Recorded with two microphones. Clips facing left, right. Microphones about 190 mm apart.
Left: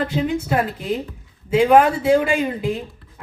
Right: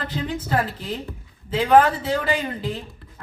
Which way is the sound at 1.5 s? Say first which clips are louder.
Left 3 dB; 10° left (ahead or behind).